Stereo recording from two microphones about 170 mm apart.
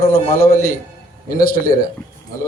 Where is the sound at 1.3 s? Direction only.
55° left (ahead or behind).